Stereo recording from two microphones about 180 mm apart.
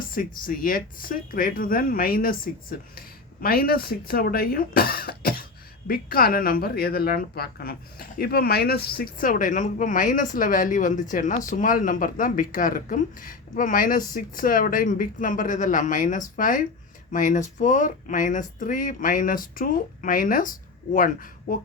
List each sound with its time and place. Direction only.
0.1 s a woman's voice: 50° left (ahead or behind)